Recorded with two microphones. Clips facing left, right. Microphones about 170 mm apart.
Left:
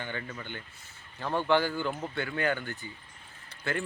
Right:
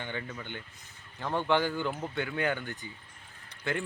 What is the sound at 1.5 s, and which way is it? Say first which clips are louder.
Speech: left 1 dB; 15° right (ahead or behind).